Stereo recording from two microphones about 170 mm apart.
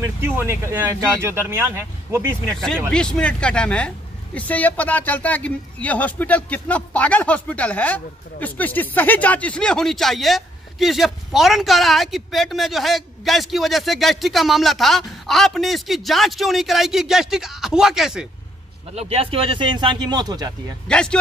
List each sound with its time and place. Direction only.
0.0 s speech: 15° right (ahead or behind)
2.5 s speech: centre (ahead or behind)
18.9 s speech: 35° right (ahead or behind)
20.9 s speech: 5° left (ahead or behind)